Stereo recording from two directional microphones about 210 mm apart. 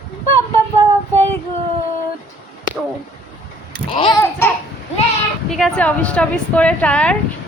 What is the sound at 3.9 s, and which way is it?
Speech, 25° left (ahead or behind).